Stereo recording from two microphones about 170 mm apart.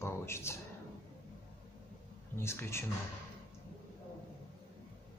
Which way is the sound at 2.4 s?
15° left (ahead or behind).